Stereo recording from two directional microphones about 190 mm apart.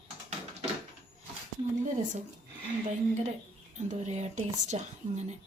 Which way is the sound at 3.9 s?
40° right (ahead or behind).